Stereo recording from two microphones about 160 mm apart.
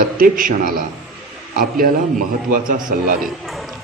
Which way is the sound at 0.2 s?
60° right (ahead or behind).